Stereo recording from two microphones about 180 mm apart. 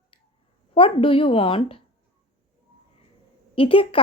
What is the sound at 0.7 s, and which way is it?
Speech, 30° left (ahead or behind).